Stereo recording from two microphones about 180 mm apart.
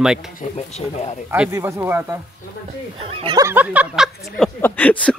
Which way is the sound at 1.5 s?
15° right (ahead or behind).